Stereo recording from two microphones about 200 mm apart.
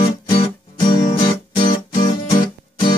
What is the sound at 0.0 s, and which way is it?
Music, 25° left (ahead or behind).